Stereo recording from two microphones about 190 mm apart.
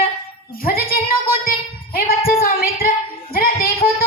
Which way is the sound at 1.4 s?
50° left (ahead or behind).